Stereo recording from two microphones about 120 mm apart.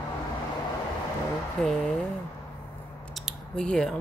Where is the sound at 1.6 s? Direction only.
5° left (ahead or behind).